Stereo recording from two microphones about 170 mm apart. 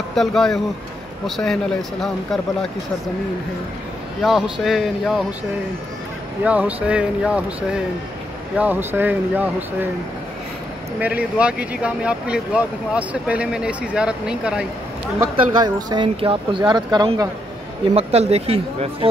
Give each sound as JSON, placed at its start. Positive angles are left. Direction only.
{"t": 0.1, "sound": "speech", "side_deg": 0}
{"t": 4.2, "sound": "speech", "side_deg": 0}
{"t": 6.4, "sound": "speech", "side_deg": -10}
{"t": 11.0, "sound": "speech", "side_deg": -10}
{"t": 15.1, "sound": "speech", "side_deg": -25}
{"t": 17.9, "sound": "speech", "side_deg": -35}